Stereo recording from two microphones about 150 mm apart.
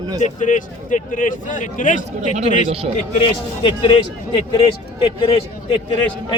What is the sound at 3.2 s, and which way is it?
Speech, 35° left (ahead or behind).